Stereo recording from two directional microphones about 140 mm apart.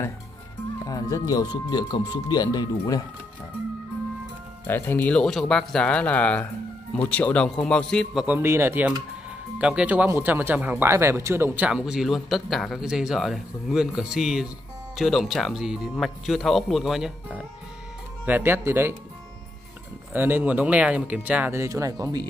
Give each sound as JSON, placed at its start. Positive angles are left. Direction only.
{"t": 0.8, "sound": "speech", "side_deg": 25}
{"t": 4.6, "sound": "speech", "side_deg": 15}
{"t": 8.4, "sound": "speech", "side_deg": -20}
{"t": 18.2, "sound": "speech", "side_deg": -15}
{"t": 20.1, "sound": "speech", "side_deg": -15}